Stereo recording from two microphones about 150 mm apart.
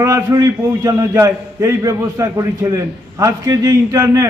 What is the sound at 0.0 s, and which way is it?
A man's voice, 20° right (ahead or behind).